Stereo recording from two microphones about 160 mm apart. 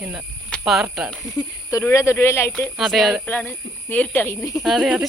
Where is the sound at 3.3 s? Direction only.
10° left (ahead or behind).